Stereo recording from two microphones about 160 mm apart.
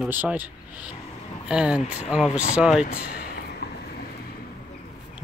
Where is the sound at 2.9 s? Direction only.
80° left.